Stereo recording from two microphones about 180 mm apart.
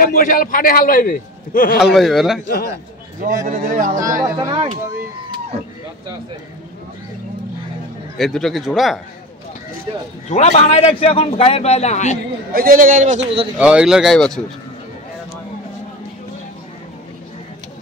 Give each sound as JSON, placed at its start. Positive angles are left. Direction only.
{"t": 0.0, "sound": "a man's voice", "side_deg": 50}
{"t": 1.8, "sound": "speech", "side_deg": 0}
{"t": 3.4, "sound": "a man's voice", "side_deg": -50}
{"t": 4.0, "sound": "speech", "side_deg": -15}
{"t": 8.2, "sound": "speech", "side_deg": 0}
{"t": 10.3, "sound": "a man's voice", "side_deg": 40}
{"t": 12.5, "sound": "a man's voice", "side_deg": -50}
{"t": 13.6, "sound": "speech", "side_deg": -5}